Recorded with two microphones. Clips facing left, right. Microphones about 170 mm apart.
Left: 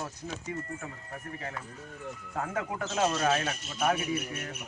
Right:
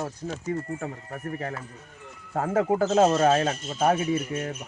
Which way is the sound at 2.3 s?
40° right (ahead or behind).